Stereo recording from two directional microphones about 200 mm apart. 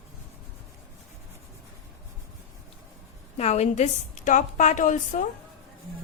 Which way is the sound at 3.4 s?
35° left (ahead or behind).